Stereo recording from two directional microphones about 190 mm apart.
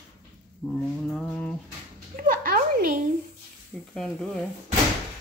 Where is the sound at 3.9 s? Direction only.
5° left (ahead or behind).